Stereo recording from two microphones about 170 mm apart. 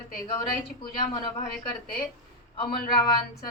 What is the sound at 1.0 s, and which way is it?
Speech, 25° left (ahead or behind).